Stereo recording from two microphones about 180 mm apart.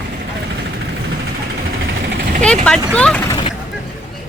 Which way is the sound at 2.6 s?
5° left (ahead or behind).